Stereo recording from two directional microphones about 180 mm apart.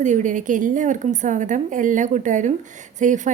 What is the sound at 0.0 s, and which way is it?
A woman's voice, 45° right (ahead or behind).